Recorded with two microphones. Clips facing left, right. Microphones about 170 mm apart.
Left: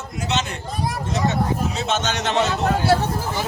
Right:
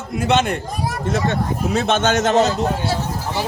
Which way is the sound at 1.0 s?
55° right (ahead or behind).